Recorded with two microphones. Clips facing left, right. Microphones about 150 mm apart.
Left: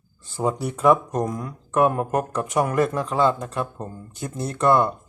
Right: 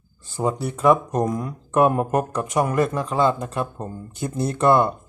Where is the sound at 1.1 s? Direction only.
15° right (ahead or behind).